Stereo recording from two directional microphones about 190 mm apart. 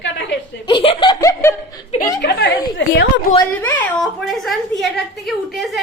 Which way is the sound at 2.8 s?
65° left (ahead or behind).